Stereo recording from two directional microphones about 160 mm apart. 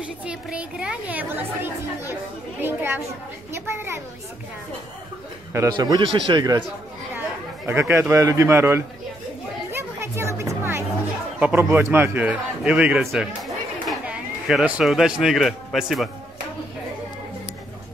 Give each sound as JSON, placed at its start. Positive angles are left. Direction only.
{"t": 0.0, "sound": "a woman's voice", "side_deg": -5}
{"t": 5.5, "sound": "speech", "side_deg": -20}
{"t": 7.2, "sound": "speech", "side_deg": -15}
{"t": 9.7, "sound": "music", "side_deg": -15}
{"t": 11.3, "sound": "a man's voice", "side_deg": -10}